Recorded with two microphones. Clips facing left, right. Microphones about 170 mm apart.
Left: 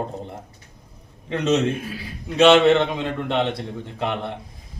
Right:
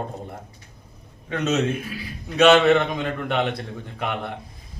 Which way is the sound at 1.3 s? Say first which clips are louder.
Left 2 dB; 30° left (ahead or behind).